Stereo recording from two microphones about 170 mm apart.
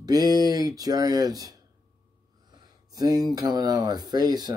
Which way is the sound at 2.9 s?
25° right (ahead or behind).